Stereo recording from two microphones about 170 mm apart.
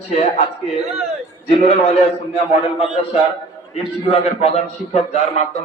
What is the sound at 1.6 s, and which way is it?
Speech, 35° left (ahead or behind).